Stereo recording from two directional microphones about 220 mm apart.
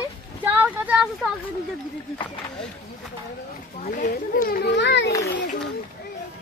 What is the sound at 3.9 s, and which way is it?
A child's voice, 40° left (ahead or behind).